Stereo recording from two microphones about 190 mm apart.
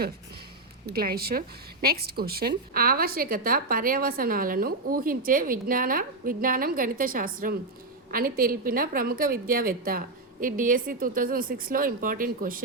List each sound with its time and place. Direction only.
0.9 s a woman's voice: 55° right (ahead or behind)